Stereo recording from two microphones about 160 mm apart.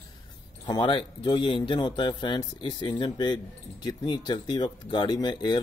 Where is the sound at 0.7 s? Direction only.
30° left (ahead or behind).